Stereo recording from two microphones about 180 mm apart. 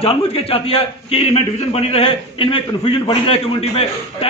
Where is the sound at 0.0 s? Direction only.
30° left (ahead or behind).